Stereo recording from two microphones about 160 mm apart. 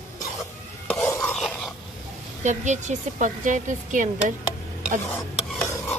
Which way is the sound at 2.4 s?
50° right (ahead or behind).